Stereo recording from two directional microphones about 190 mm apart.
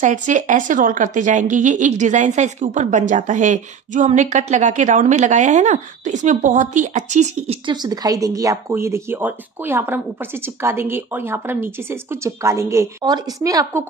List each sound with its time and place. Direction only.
0.0 s a woman's voice: 40° right (ahead or behind)
7.6 s a woman's voice: 20° right (ahead or behind)